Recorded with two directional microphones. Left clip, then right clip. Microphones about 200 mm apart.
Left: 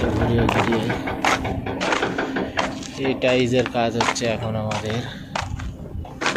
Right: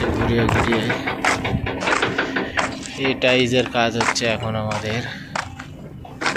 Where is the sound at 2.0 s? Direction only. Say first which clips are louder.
Right 2 dB; 50° left (ahead or behind).